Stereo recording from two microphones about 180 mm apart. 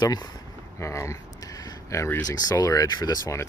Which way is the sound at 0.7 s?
15° left (ahead or behind).